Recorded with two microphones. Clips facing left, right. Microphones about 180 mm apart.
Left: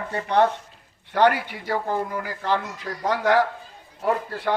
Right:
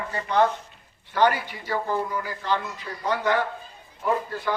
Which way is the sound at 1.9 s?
55° left (ahead or behind).